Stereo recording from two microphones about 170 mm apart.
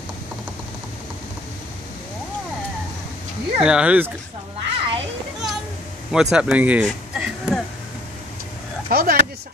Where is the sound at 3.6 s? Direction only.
5° right (ahead or behind).